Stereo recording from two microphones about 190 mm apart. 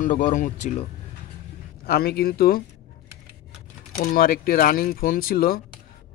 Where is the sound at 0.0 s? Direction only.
40° left (ahead or behind).